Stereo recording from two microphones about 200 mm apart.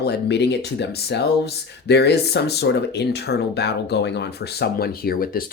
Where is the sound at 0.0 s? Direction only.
55° left (ahead or behind).